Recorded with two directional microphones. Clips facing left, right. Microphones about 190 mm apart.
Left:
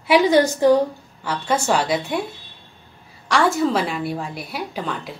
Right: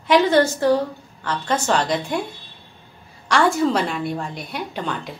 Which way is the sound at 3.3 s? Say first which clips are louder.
Even; centre (ahead or behind).